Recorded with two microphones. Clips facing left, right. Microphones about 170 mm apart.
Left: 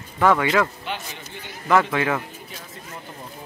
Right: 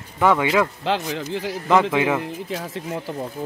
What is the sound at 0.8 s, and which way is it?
Speech, 90° right.